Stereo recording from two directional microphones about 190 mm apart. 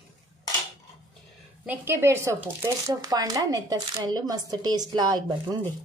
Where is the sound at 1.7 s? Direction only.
10° right (ahead or behind).